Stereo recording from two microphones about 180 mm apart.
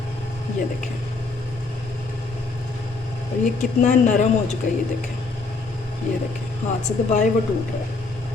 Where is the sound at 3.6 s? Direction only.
45° left (ahead or behind).